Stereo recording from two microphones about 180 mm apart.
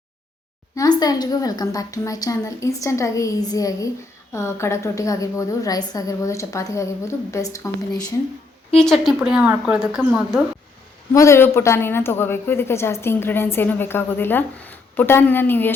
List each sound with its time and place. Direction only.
0.8 s a woman's voice: 20° left (ahead or behind)
8.8 s a woman's voice: centre (ahead or behind)
11.1 s a woman's voice: 15° left (ahead or behind)